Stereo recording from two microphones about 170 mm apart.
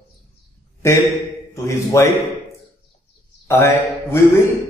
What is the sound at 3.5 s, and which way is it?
Speech, 15° left (ahead or behind).